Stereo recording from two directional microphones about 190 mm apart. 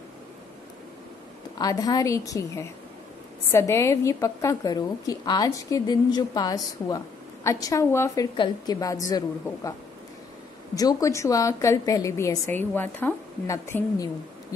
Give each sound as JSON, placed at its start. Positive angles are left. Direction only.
{"t": 1.6, "sound": "a woman's voice", "side_deg": 20}